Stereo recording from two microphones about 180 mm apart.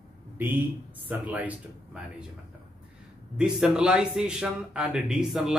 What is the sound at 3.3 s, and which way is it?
Speech, 5° right (ahead or behind).